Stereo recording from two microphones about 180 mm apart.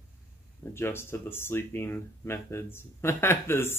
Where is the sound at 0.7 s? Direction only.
15° left (ahead or behind).